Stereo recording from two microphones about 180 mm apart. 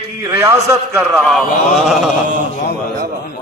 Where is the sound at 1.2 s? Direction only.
Centre (ahead or behind).